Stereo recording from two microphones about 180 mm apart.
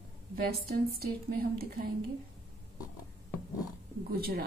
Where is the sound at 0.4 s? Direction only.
60° right (ahead or behind).